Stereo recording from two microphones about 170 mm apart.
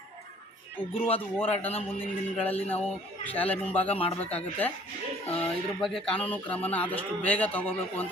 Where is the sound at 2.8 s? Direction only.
10° left (ahead or behind).